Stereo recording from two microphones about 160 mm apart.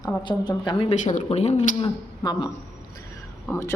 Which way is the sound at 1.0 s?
50° left (ahead or behind).